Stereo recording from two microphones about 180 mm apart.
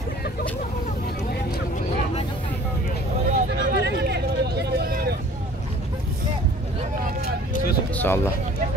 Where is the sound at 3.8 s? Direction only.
65° right (ahead or behind).